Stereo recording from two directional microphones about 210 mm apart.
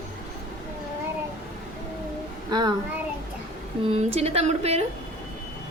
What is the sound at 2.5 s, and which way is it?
Speech, 20° right (ahead or behind).